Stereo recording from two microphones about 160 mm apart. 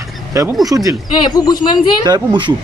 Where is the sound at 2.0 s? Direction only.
25° right (ahead or behind).